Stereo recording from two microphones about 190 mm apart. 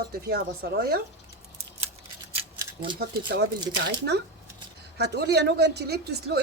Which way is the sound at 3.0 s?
55° right (ahead or behind).